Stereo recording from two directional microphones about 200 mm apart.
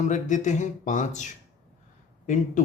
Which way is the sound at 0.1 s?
40° left (ahead or behind).